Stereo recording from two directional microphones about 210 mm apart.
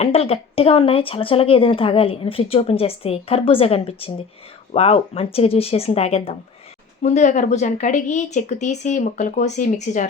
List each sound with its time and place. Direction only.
0.0 s speech: 30° left (ahead or behind)